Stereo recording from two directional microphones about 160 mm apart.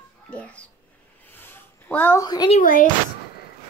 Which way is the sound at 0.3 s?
10° left (ahead or behind).